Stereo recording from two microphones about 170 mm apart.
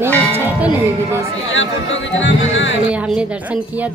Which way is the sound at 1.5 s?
90° left.